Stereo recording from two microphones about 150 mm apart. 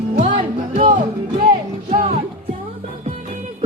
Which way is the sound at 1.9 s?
55° right (ahead or behind).